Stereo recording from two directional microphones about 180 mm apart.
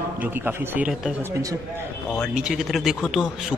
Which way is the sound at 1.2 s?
15° right (ahead or behind).